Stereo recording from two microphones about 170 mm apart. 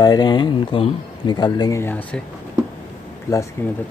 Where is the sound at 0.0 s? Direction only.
25° left (ahead or behind); by 2.2 s 10° left (ahead or behind).